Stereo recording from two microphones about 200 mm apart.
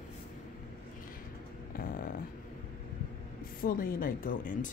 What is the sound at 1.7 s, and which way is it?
Speech, 45° left (ahead or behind).